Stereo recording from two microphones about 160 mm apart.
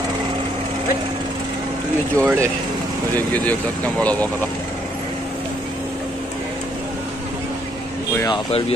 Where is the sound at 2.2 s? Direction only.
15° right (ahead or behind).